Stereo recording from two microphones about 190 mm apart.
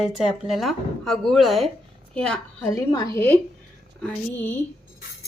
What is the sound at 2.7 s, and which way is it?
Speech, 15° left (ahead or behind).